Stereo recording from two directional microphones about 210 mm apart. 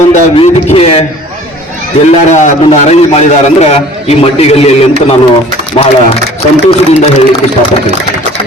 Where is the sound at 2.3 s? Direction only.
35° left (ahead or behind).